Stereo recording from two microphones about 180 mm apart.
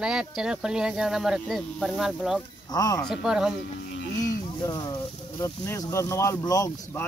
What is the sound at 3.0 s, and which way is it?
Speech, centre (ahead or behind).